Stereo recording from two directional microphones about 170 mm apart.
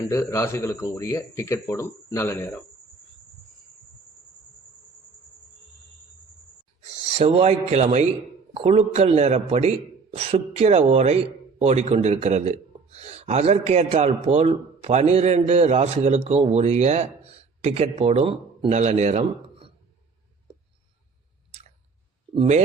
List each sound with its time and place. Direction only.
0.1 s speech: 20° left (ahead or behind)
7.2 s a man's voice: 35° right (ahead or behind)
22.4 s speech: 40° right (ahead or behind)